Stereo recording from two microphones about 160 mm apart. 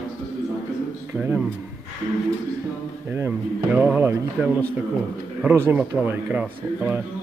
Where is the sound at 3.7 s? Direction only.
10° right (ahead or behind).